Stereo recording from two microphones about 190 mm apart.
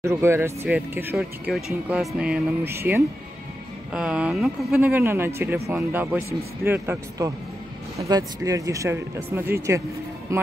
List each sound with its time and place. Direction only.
0.0 s speech: 15° right (ahead or behind)
4.7 s speech: 10° right (ahead or behind)